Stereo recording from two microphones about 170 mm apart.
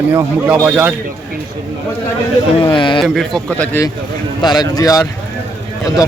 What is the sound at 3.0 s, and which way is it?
Speech, centre (ahead or behind).